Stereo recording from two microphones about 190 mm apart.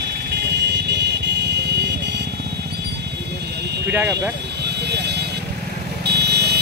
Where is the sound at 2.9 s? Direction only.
60° right (ahead or behind).